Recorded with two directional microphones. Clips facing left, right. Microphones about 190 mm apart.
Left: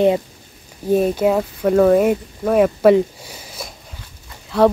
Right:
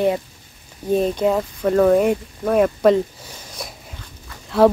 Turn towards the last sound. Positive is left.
turn(degrees=0)  # may be behind; listen again after turning